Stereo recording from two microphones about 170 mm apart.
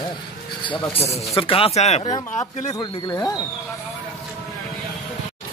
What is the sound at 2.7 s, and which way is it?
Speech, 20° left (ahead or behind).